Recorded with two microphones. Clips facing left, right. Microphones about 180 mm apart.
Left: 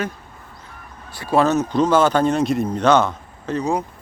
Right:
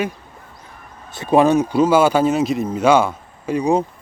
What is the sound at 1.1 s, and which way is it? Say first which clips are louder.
Speech: right 3 dB; 20° right (ahead or behind).